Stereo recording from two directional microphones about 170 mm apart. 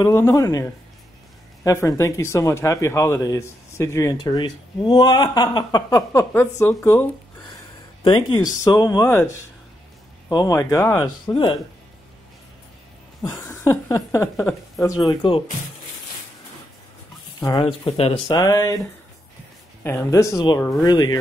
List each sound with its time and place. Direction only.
0.0 s speech: 20° left (ahead or behind)
6.3 s a sound: 15° left (ahead or behind)
8.0 s speech: 25° left (ahead or behind)
10.3 s speech: 20° left (ahead or behind)
13.2 s a sound: 15° left (ahead or behind)
15.0 s speech: 30° left (ahead or behind)
17.4 s speech: 25° left (ahead or behind)
18.3 s speech: 20° left (ahead or behind)
19.8 s a sound: 15° left (ahead or behind)
20.8 s speech: 25° left (ahead or behind)